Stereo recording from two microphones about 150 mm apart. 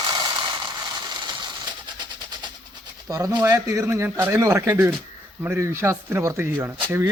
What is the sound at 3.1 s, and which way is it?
Speech, 25° right (ahead or behind).